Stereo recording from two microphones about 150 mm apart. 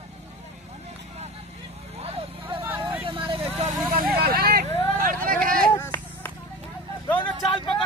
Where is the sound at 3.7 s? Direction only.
70° right (ahead or behind).